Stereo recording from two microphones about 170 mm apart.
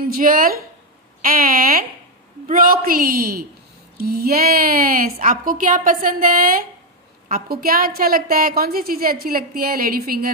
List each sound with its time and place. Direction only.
0.0 s a woman's voice: 60° right (ahead or behind)